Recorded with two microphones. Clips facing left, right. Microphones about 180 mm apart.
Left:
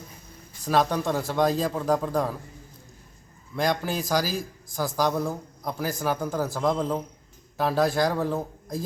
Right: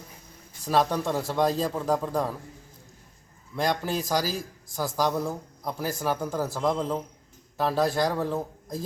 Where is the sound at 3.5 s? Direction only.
Centre (ahead or behind).